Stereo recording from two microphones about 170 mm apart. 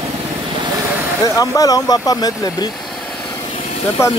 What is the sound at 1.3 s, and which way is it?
Speech, 20° left (ahead or behind).